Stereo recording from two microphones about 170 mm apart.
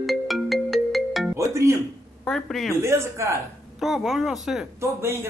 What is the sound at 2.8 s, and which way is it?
Speech, 15° right (ahead or behind).